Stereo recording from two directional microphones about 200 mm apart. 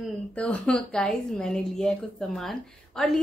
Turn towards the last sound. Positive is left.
turn(degrees=0)  # may be behind; listen again after turning